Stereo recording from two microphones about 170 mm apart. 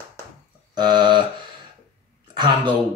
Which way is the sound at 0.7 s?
25° right (ahead or behind).